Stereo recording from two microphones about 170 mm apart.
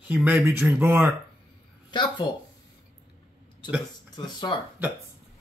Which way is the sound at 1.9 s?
25° left (ahead or behind).